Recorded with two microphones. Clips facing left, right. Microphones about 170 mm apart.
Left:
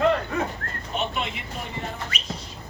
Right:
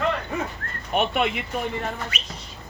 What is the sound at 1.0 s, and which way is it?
Speech, 60° right (ahead or behind).